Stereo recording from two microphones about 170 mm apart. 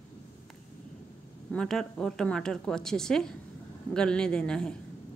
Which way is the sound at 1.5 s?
5° left (ahead or behind).